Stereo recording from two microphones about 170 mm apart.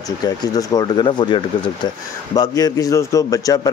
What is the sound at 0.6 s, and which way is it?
Speech, 25° left (ahead or behind).